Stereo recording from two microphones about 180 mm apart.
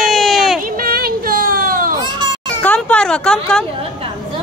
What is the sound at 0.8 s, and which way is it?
Child singing, 55° right (ahead or behind).